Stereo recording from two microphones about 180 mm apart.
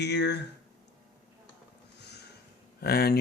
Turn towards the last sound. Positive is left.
turn(degrees=60)  # may be behind; listen again after turning